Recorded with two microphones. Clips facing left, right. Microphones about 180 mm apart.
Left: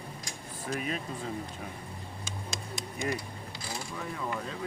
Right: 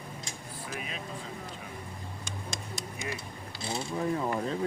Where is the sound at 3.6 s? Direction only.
25° right (ahead or behind).